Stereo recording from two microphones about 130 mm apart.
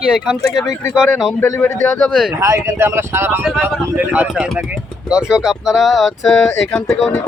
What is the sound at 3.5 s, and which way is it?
Speech, centre (ahead or behind).